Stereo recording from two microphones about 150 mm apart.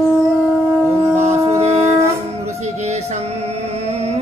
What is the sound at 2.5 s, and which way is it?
Music, 50° right (ahead or behind).